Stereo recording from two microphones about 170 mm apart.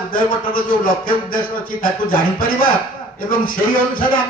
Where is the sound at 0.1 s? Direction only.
55° left (ahead or behind).